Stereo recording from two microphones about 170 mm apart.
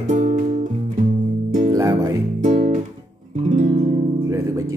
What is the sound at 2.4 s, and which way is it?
Guitar, 45° right (ahead or behind).